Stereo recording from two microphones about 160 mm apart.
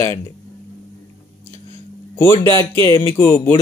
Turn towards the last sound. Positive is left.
turn(degrees=55)  # may be behind; listen again after turning